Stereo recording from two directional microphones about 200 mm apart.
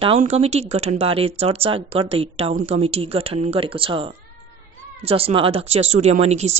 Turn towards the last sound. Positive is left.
turn(degrees=-35)  # may be behind; listen again after turning